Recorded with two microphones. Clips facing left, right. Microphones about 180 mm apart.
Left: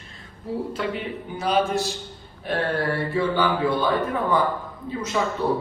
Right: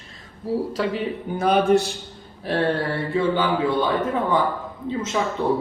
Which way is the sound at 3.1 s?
20° right (ahead or behind).